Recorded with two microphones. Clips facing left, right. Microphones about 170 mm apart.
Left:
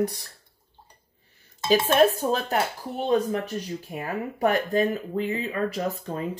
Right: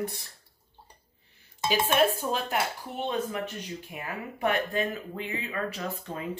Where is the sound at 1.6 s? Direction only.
40° left (ahead or behind).